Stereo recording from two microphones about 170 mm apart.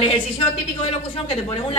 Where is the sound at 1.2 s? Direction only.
35° left (ahead or behind).